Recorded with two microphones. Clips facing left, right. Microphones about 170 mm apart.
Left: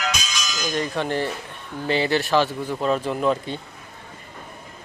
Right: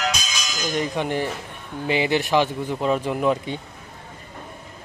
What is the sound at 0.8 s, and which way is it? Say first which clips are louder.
Speech: even; 15° right (ahead or behind).